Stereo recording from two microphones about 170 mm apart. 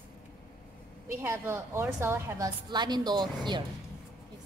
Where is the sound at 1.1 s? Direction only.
15° right (ahead or behind).